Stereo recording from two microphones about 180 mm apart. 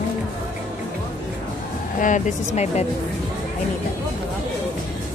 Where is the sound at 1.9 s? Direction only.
45° left (ahead or behind).